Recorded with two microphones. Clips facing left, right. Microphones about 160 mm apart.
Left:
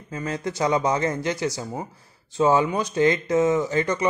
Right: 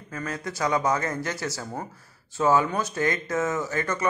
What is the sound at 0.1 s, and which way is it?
Speech, 20° left (ahead or behind).